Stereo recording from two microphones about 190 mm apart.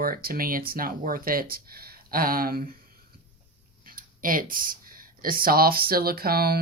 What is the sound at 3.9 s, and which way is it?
Speech, 45° right (ahead or behind).